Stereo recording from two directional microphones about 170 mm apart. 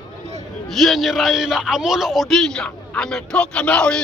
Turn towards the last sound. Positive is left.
turn(degrees=5)  # may be behind; listen again after turning